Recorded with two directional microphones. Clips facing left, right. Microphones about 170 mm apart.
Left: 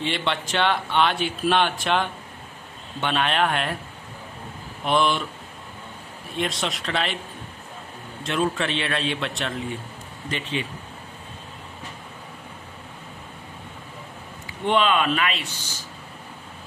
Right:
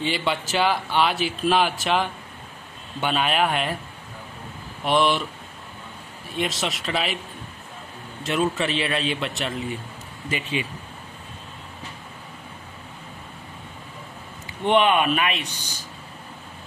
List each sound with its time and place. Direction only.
0.0 s a man's voice: 5° right (ahead or behind)
4.8 s a man's voice: centre (ahead or behind)
6.3 s a man's voice: centre (ahead or behind)
8.2 s a man's voice: centre (ahead or behind)
14.7 s speech: 20° right (ahead or behind)